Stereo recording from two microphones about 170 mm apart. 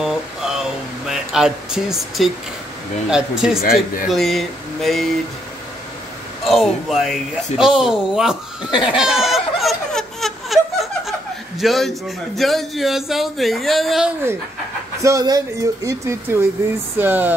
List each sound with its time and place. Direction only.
0.0 s a sound: 5° right (ahead or behind)
3.1 s speech: 5° right (ahead or behind)
3.6 s speech: 55° left (ahead or behind)
4.1 s speech: centre (ahead or behind)
6.4 s speech: centre (ahead or behind)
8.9 s a sound: 5° right (ahead or behind)
15.0 s a woman's voice: 20° right (ahead or behind)